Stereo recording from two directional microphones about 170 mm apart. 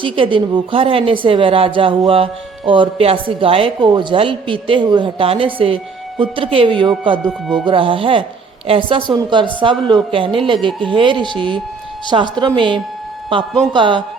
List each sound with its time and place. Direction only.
0.0 s a woman's voice: 30° right (ahead or behind)
7.3 s speech: 5° right (ahead or behind)
7.6 s a woman's voice: 30° right (ahead or behind)